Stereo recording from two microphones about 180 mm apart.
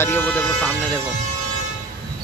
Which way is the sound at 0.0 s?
10° left (ahead or behind).